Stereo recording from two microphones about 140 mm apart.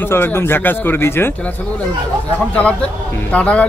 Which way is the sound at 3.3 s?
10° left (ahead or behind).